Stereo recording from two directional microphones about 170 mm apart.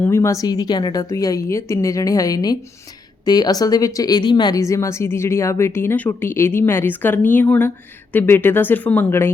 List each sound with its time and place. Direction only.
0.0 s a woman's voice: 15° left (ahead or behind)